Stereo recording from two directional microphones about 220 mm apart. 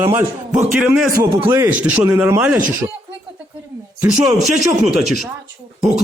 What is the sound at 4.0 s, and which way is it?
Speech, 5° right (ahead or behind).